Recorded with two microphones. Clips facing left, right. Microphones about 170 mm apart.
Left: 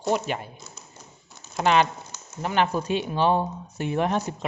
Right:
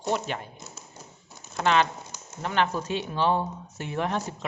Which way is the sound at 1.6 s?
15° left (ahead or behind).